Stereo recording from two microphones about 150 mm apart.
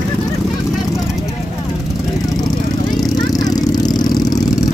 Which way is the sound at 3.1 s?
25° left (ahead or behind).